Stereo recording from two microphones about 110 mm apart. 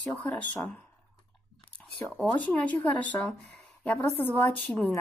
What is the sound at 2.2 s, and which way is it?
Speech, 15° left (ahead or behind).